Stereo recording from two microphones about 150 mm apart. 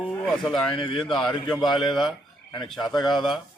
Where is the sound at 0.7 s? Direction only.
35° left (ahead or behind).